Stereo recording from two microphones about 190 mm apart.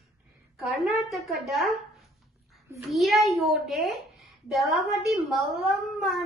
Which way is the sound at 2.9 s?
Centre (ahead or behind).